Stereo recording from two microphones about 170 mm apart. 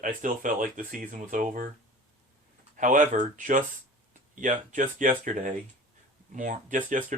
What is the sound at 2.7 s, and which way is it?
Speech, 50° right (ahead or behind).